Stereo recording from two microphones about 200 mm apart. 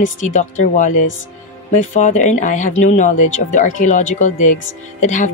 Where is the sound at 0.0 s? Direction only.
40° left (ahead or behind).